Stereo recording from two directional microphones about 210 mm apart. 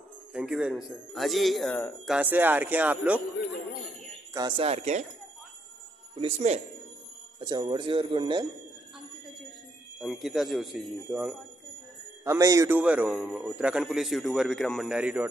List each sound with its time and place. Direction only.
0.3 s speech: 5° right (ahead or behind)
2.1 s speech: 10° right (ahead or behind)
4.3 s speech: 20° right (ahead or behind)
6.1 s speech: 30° right (ahead or behind)
9.9 s speech: centre (ahead or behind)